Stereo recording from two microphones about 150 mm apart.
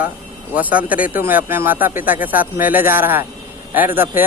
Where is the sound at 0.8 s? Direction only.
70° left (ahead or behind).